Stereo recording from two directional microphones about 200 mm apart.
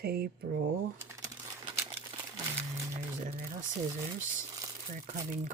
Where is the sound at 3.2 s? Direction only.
40° right (ahead or behind).